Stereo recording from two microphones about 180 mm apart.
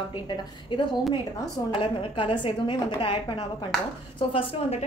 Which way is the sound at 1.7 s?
30° left (ahead or behind).